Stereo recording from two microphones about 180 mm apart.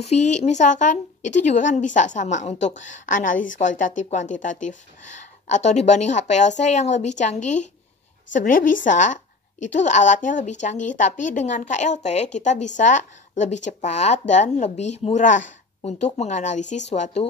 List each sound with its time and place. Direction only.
0.0 s a woman's voice: 40° left (ahead or behind)